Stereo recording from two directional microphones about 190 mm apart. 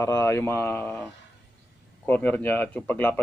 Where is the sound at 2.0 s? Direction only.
10° left (ahead or behind).